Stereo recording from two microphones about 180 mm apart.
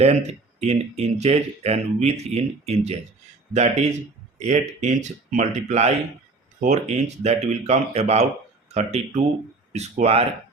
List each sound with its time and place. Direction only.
0.0 s speech: 35° right (ahead or behind)